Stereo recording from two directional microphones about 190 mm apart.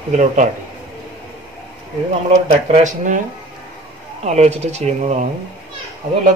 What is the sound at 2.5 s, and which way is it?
Speech, 40° right (ahead or behind).